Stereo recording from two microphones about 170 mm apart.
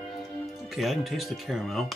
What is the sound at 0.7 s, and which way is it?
Speech, centre (ahead or behind).